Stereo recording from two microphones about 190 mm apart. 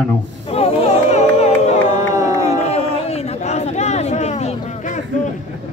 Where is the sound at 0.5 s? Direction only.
35° left (ahead or behind).